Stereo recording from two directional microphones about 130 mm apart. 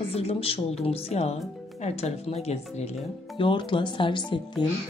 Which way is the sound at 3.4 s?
40° left (ahead or behind).